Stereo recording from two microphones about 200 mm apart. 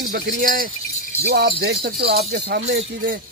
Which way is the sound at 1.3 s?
55° right (ahead or behind).